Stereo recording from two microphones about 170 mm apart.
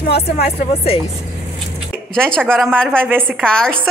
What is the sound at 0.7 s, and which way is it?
Speech, 35° left (ahead or behind).